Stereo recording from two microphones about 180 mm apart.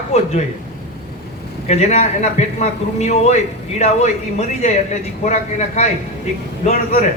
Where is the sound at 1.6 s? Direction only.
40° left (ahead or behind).